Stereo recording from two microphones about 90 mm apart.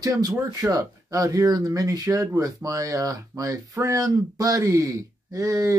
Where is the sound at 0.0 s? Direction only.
40° right (ahead or behind).